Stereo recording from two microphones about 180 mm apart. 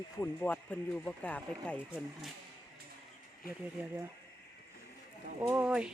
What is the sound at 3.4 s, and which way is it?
Speech, 55° left (ahead or behind).